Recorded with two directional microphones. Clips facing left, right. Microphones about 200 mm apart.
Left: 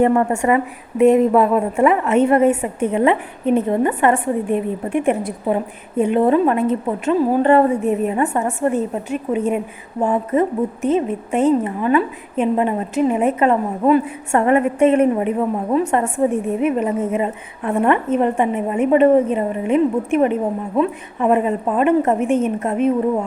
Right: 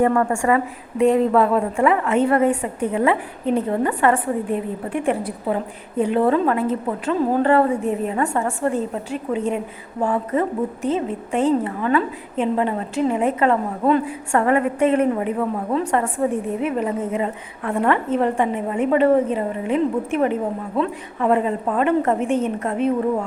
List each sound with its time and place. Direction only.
0.0 s a woman's voice: 20° left (ahead or behind)